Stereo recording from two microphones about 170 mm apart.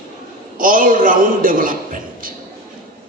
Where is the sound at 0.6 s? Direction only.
55° right (ahead or behind).